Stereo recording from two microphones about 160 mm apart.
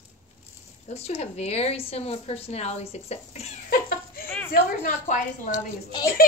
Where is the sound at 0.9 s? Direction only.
40° left (ahead or behind).